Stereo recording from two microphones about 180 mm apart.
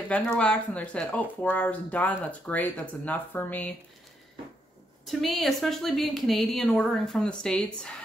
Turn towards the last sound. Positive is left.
turn(degrees=5)  # may be behind; listen again after turning